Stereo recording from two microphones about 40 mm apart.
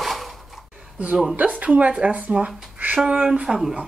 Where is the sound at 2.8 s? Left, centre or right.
Right.